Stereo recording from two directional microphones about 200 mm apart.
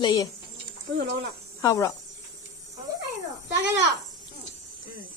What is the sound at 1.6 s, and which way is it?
Speech, 15° left (ahead or behind).